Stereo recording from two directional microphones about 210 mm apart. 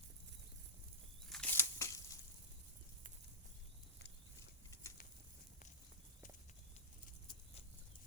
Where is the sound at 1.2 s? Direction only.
5° left (ahead or behind).